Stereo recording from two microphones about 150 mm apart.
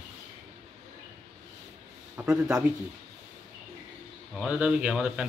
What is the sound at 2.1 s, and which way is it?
Speech, 10° right (ahead or behind).